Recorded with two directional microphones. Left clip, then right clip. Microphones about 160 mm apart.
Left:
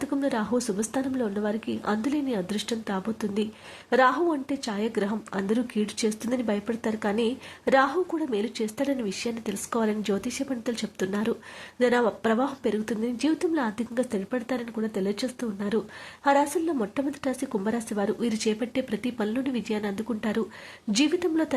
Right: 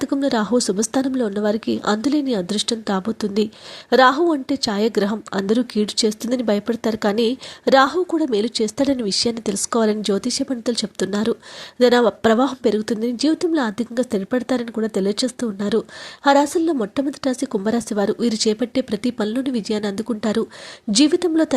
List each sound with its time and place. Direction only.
0.0 s speech: 35° right (ahead or behind)